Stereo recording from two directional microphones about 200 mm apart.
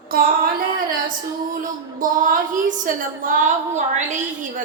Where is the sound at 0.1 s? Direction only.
45° right (ahead or behind).